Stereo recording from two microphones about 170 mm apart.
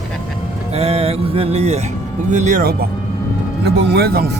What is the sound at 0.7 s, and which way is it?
Speech, 35° right (ahead or behind).